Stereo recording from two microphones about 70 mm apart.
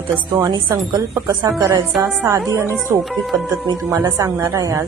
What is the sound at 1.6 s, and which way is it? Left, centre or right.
Music, right.